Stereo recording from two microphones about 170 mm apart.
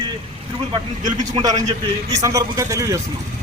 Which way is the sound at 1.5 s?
45° right (ahead or behind).